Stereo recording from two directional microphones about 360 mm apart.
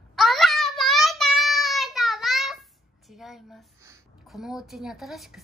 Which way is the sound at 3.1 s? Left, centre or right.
Centre.